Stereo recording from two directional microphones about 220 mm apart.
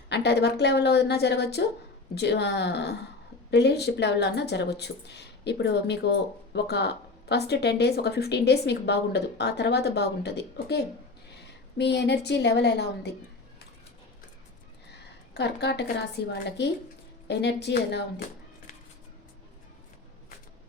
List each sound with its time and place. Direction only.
0.1 s speech: 50° left (ahead or behind)
15.4 s speech: 50° left (ahead or behind)